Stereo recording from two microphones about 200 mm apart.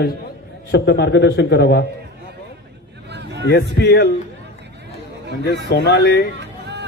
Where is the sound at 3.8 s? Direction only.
55° left (ahead or behind).